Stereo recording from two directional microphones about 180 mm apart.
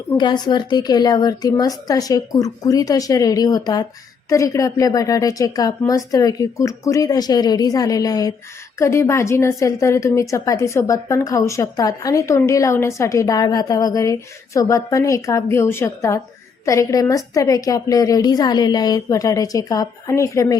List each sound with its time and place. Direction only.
0.2 s a woman's voice: 25° left (ahead or behind)